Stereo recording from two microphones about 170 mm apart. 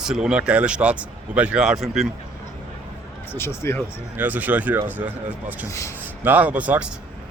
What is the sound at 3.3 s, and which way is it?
Speech, 15° left (ahead or behind).